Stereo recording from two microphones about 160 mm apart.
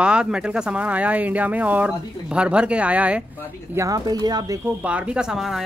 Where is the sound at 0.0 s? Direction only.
5° right (ahead or behind).